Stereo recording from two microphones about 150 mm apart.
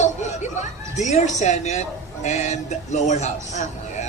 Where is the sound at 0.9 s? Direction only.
50° left (ahead or behind).